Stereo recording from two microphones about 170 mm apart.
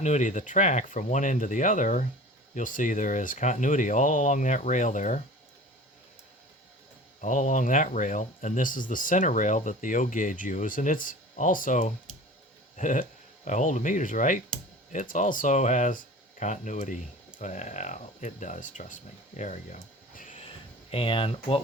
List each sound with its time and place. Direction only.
0.0 s speech: 45° left (ahead or behind)
7.2 s speech: 45° left (ahead or behind)
19.4 s a sound: 45° left (ahead or behind)
20.9 s speech: 30° left (ahead or behind)